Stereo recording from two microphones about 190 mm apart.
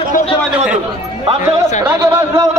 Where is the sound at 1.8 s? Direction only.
20° right (ahead or behind).